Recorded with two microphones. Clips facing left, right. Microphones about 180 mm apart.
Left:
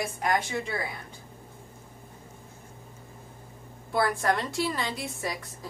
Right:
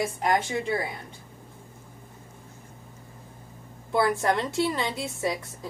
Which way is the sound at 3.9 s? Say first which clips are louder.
Right 2 dB; 25° right (ahead or behind).